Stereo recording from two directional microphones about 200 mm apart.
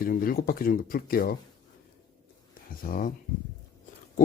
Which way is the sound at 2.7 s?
45° left (ahead or behind).